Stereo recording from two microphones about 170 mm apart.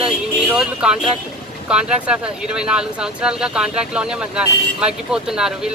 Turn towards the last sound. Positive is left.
turn(degrees=-5)  # may be behind; listen again after turning